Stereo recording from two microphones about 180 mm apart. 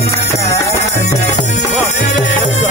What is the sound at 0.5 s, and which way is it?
Music, 15° left (ahead or behind).